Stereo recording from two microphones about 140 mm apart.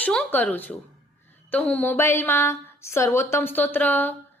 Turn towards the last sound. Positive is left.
turn(degrees=15)  # may be behind; listen again after turning